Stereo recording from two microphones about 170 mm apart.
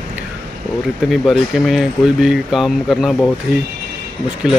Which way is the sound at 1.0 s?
Centre (ahead or behind).